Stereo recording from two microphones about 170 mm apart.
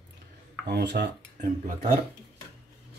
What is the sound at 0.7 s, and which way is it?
Cutlery, 75° right (ahead or behind).